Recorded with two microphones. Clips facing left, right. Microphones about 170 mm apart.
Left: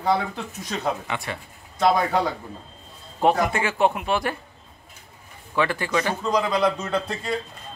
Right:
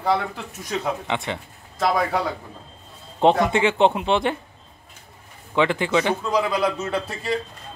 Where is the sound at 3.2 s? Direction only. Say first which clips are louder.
Right 3 dB; 25° right (ahead or behind).